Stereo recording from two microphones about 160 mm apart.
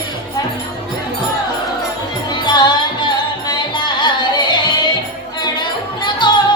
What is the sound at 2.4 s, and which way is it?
Music, 25° left (ahead or behind).